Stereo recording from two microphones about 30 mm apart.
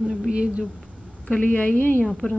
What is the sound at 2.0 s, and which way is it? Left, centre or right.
Speech, centre.